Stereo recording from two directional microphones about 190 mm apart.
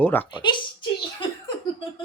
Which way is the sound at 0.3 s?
25° left (ahead or behind).